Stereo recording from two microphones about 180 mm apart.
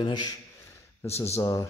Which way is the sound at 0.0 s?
25° left (ahead or behind).